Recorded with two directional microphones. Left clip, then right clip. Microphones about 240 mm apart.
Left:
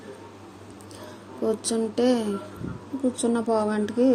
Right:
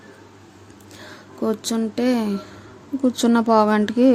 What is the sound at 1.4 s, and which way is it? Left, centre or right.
Speech, right.